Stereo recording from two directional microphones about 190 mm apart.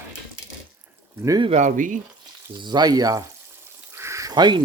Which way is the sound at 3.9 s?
15° right (ahead or behind).